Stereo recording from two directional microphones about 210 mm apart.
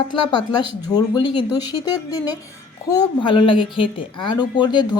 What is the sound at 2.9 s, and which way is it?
Speech, 20° left (ahead or behind).